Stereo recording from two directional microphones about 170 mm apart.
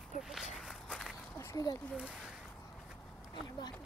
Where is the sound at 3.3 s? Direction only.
25° left (ahead or behind).